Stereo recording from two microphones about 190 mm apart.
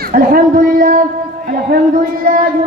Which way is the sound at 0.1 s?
50° right (ahead or behind).